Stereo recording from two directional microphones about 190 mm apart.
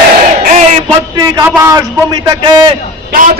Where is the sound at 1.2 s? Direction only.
20° right (ahead or behind).